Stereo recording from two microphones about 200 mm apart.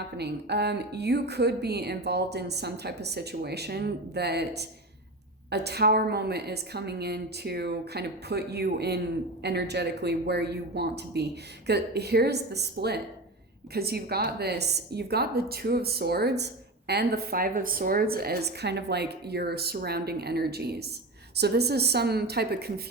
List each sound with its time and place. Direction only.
0.2 s a woman's voice: 55° right (ahead or behind)